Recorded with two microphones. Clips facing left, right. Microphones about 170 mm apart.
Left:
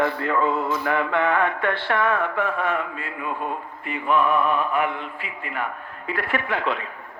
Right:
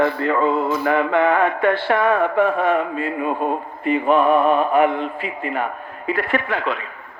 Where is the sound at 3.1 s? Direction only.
25° right (ahead or behind).